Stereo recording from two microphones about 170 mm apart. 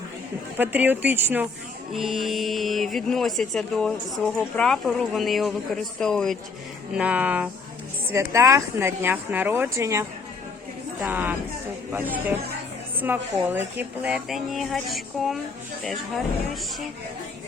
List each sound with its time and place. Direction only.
0.5 s speech: 10° right (ahead or behind)
1.9 s speech: centre (ahead or behind)
6.9 s speech: 10° right (ahead or behind)